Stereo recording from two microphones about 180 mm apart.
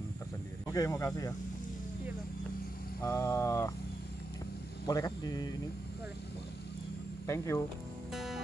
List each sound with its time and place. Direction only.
0.7 s vehicle: 15° left (ahead or behind)
3.0 s vehicle: 15° left (ahead or behind)
4.8 s speech: 20° left (ahead or behind)
7.2 s vehicle: 15° left (ahead or behind)
8.1 s music: centre (ahead or behind)